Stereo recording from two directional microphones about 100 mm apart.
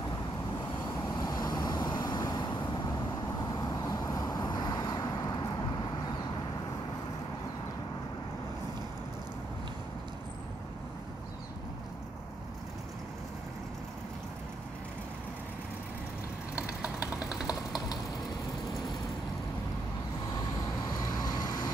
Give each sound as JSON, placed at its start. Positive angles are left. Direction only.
{"t": 1.1, "sound": "vehicle", "side_deg": 40}
{"t": 17.5, "sound": "typing", "side_deg": 40}
{"t": 21.1, "sound": "vehicle", "side_deg": 45}